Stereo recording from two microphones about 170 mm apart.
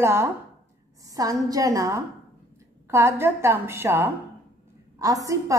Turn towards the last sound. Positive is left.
turn(degrees=-20)  # may be behind; listen again after turning